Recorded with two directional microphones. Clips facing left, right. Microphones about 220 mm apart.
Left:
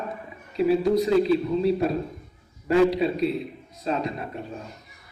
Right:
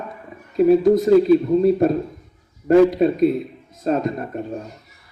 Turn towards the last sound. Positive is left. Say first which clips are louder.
# right 7 dB
turn(degrees=-45)  # may be behind; listen again after turning